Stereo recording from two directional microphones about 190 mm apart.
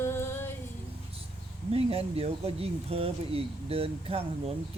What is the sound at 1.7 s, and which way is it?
Speech, 30° right (ahead or behind).